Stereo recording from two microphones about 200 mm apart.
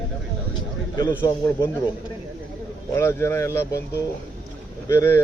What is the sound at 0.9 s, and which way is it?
Speech, 20° left (ahead or behind).